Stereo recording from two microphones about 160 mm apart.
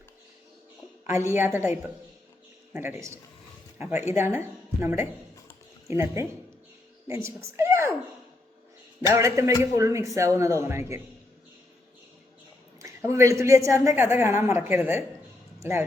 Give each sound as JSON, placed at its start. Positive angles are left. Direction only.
{"t": 1.0, "sound": "a woman's voice", "side_deg": -15}
{"t": 9.0, "sound": "a man's voice", "side_deg": -20}
{"t": 12.8, "sound": "a woman's voice", "side_deg": -15}